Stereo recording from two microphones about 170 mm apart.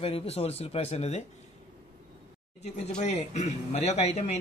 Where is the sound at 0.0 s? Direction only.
35° left (ahead or behind).